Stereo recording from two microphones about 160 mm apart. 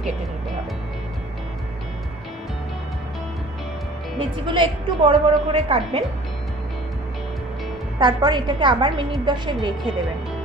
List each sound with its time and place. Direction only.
4.2 s a woman's voice: 30° right (ahead or behind)
8.0 s a woman's voice: 30° right (ahead or behind)